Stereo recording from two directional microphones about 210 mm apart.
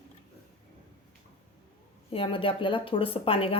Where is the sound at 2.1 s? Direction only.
25° left (ahead or behind).